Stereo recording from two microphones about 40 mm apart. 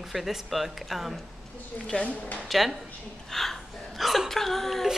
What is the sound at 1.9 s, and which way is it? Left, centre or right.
Speech, left.